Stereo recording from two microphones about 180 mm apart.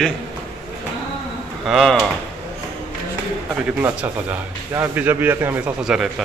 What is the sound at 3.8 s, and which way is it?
A man's voice, 10° right (ahead or behind).